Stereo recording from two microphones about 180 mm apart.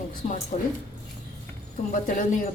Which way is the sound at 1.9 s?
45° left (ahead or behind).